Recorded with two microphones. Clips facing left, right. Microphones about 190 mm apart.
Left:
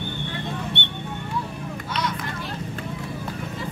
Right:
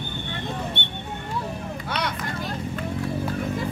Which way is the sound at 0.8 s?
70° left (ahead or behind).